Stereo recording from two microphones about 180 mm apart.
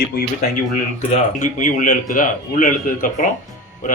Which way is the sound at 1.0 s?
40° left (ahead or behind).